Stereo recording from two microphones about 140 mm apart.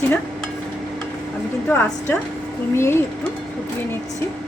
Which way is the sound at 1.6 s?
15° left (ahead or behind).